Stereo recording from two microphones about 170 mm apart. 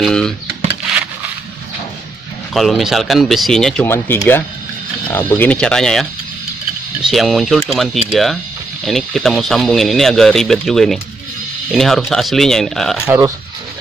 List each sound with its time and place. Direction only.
0.0 s speech: 5° left (ahead or behind)
2.5 s speech: centre (ahead or behind)